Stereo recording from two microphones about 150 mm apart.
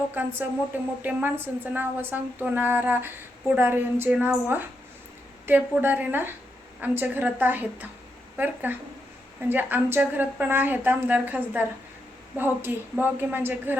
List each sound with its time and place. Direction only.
0.1 s speech: 10° right (ahead or behind)